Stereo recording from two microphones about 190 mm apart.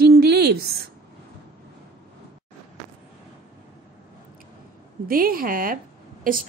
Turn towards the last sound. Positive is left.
turn(degrees=-45)  # may be behind; listen again after turning